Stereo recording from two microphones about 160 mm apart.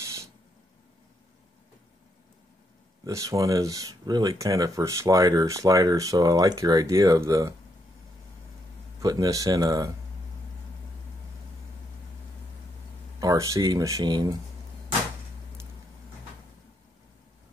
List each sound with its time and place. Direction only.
0.0 s a sound: 20° right (ahead or behind)
3.1 s speech: 20° right (ahead or behind)
9.0 s speech: 20° right (ahead or behind)
13.2 s speech: 20° right (ahead or behind)